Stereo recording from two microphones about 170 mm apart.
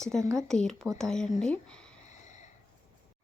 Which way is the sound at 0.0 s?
Centre (ahead or behind).